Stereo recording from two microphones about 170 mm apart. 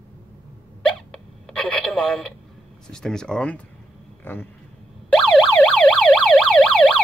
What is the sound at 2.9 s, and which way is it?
Speech, 5° left (ahead or behind).